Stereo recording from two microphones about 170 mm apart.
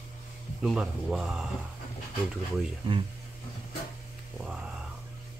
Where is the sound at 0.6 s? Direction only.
5° right (ahead or behind).